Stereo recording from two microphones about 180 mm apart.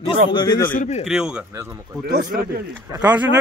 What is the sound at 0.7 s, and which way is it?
Speech, 40° left (ahead or behind).